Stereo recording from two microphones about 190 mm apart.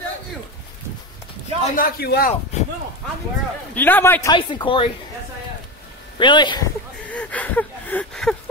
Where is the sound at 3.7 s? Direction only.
10° left (ahead or behind).